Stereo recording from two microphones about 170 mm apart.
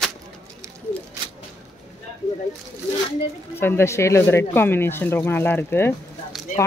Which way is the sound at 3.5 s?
15° left (ahead or behind).